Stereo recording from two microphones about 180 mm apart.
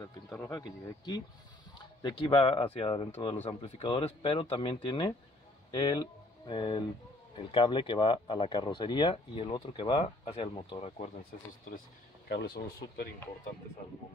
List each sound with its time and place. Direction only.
0.4 s speech: 20° left (ahead or behind)
12.3 s speech: 65° left (ahead or behind)